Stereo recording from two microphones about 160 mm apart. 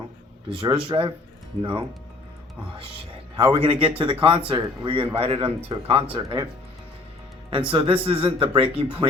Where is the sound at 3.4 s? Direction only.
30° right (ahead or behind).